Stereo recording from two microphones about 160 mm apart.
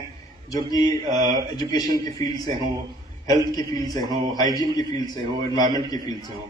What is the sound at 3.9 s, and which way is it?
Speech, 25° left (ahead or behind).